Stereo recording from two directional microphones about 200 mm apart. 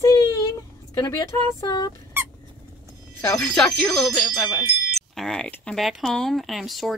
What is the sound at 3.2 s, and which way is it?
A woman's voice, 10° left (ahead or behind).